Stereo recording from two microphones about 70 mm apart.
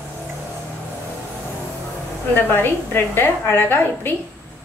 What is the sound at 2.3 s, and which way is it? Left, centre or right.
A woman's voice, left.